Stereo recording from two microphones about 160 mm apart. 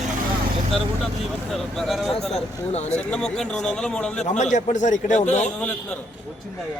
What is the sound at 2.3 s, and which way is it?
Speech, 45° left (ahead or behind).